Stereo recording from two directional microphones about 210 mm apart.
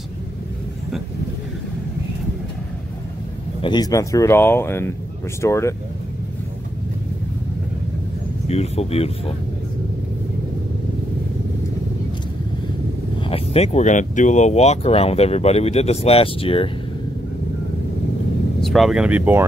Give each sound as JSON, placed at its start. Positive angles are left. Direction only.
{"t": 3.6, "sound": "speech", "side_deg": 20}
{"t": 8.5, "sound": "speech", "side_deg": 30}
{"t": 13.3, "sound": "speech", "side_deg": 30}
{"t": 18.6, "sound": "speech", "side_deg": 0}